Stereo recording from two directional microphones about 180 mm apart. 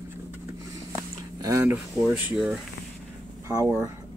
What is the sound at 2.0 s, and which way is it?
Speech, 5° right (ahead or behind).